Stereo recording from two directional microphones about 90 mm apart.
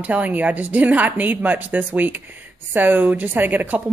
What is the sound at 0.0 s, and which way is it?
Speech, 15° right (ahead or behind).